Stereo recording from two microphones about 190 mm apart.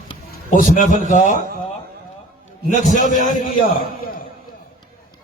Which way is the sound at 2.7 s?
40° left (ahead or behind).